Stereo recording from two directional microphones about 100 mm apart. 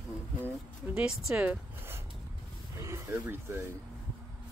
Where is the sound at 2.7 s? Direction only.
30° right (ahead or behind).